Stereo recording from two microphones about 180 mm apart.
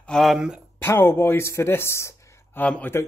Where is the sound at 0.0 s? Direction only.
Centre (ahead or behind).